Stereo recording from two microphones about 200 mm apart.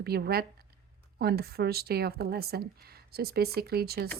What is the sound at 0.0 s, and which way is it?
Speech, 50° right (ahead or behind).